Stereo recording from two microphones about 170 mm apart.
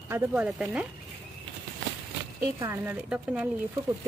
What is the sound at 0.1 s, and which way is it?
Speech, 10° right (ahead or behind).